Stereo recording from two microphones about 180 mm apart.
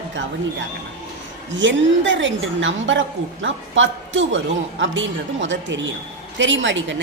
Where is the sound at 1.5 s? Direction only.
90° right.